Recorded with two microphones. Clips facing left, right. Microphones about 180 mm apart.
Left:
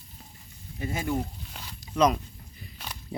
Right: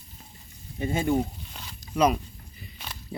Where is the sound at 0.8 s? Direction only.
25° right (ahead or behind).